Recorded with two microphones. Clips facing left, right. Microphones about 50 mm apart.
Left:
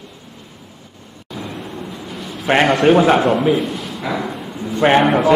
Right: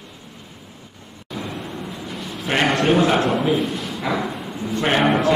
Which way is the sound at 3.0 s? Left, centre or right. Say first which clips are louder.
Left 4 dB; left.